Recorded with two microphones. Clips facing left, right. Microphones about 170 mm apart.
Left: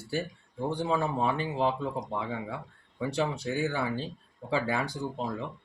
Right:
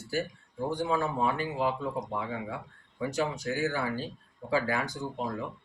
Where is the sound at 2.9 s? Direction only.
30° left (ahead or behind).